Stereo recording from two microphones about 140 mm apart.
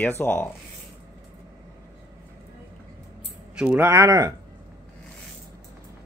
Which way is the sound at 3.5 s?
15° right (ahead or behind).